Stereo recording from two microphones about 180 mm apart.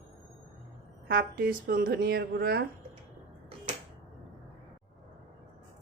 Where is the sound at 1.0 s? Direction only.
55° right (ahead or behind).